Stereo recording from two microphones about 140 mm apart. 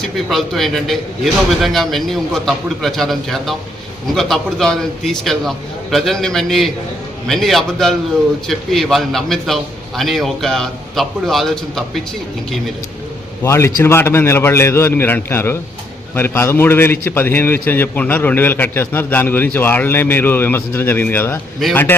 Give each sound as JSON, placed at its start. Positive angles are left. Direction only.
{"t": 0.0, "sound": "a man's voice", "side_deg": 0}
{"t": 13.4, "sound": "a man's voice", "side_deg": 20}